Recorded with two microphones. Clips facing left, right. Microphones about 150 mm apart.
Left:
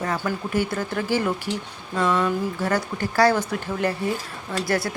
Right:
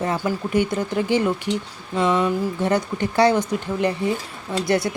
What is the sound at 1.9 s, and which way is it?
Speech, 20° right (ahead or behind).